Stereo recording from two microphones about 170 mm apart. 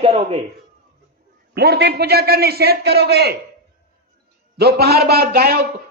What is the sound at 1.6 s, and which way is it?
A man's voice, 80° right.